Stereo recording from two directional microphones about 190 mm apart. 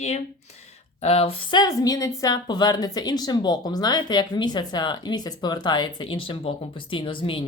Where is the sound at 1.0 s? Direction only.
30° left (ahead or behind).